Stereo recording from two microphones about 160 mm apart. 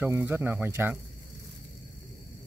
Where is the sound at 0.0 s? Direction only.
10° right (ahead or behind).